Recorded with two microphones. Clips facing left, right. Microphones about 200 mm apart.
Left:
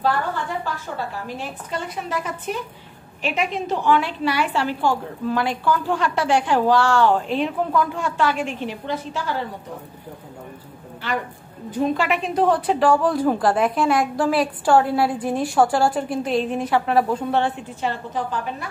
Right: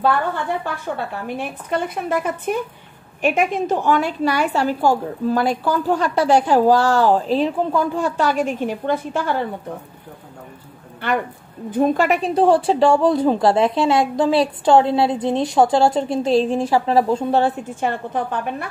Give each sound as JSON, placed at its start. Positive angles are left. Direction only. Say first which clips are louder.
{"t": 0.0, "sound": "a woman's voice", "louder": "right 3 dB", "side_deg": -60}
{"t": 11.7, "sound": "a woman's voice", "louder": "right 4 dB", "side_deg": -45}
{"t": 12.4, "sound": "a woman's voice", "louder": "right 4 dB", "side_deg": -30}
{"t": 17.6, "sound": "a woman's voice", "louder": "right 3 dB", "side_deg": -50}